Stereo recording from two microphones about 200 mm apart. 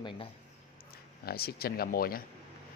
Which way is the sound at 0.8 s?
50° left (ahead or behind).